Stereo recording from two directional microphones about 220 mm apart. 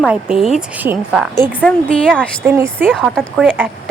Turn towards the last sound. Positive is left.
turn(degrees=-5)  # may be behind; listen again after turning